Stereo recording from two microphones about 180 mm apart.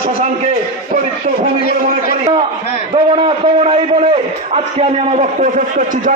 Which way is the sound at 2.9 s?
30° right (ahead or behind).